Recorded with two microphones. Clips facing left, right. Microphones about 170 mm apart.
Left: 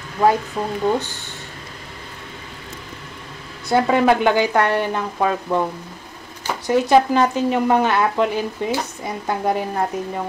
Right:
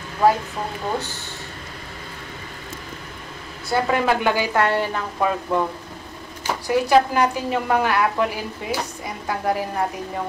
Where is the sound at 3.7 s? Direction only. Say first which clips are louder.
Left 4 dB; 20° left (ahead or behind).